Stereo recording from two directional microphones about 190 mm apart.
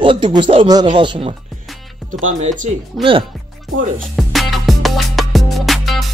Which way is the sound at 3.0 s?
Centre (ahead or behind).